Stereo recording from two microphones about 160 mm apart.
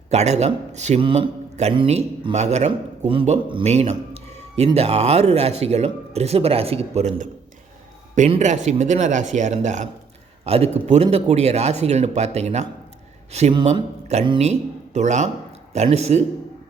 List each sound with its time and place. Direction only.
0.1 s a man's voice: 45° right (ahead or behind)
8.3 s a man's voice: 50° right (ahead or behind)